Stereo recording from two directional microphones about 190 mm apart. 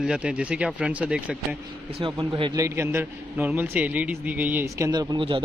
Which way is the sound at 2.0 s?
25° right (ahead or behind).